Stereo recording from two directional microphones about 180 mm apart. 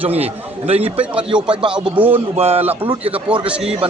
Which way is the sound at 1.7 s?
5° right (ahead or behind).